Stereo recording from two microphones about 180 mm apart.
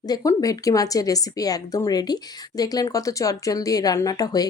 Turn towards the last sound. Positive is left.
turn(degrees=20)  # may be behind; listen again after turning